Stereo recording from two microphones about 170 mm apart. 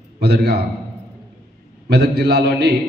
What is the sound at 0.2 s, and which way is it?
Speech, 75° right (ahead or behind).